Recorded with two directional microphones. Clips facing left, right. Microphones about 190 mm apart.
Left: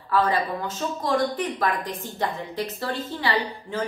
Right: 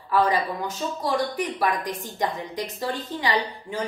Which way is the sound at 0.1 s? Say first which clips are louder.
Right 1 dB; 15° right (ahead or behind).